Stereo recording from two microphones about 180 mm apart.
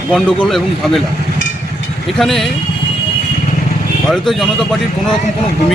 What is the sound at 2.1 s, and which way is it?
Speech, centre (ahead or behind).